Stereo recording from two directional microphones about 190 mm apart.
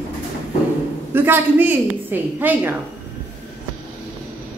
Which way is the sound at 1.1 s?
10° right (ahead or behind).